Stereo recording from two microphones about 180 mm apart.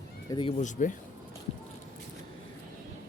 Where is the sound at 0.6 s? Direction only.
45° left (ahead or behind).